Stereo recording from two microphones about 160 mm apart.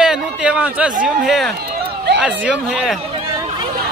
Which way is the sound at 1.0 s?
Centre (ahead or behind).